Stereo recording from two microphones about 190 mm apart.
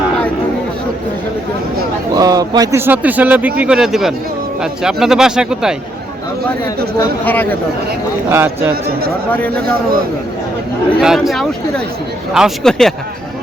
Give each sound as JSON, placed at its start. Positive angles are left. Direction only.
{"t": 2.1, "sound": "speech", "side_deg": -20}
{"t": 7.0, "sound": "speech", "side_deg": 10}
{"t": 8.3, "sound": "speech", "side_deg": -15}
{"t": 8.7, "sound": "a man's voice", "side_deg": -55}
{"t": 11.0, "sound": "speech", "side_deg": 0}